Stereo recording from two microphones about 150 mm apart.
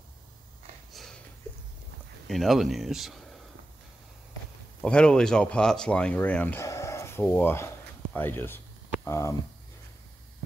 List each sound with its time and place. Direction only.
0.9 s sniff: centre (ahead or behind)
2.2 s speech: centre (ahead or behind)
4.8 s speech: 5° left (ahead or behind)